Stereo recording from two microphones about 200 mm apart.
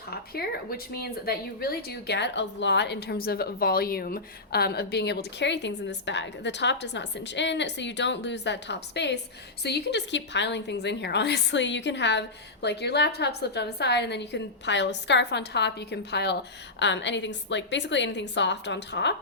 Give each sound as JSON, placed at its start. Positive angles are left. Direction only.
{"t": 0.9, "sound": "a woman's voice", "side_deg": 50}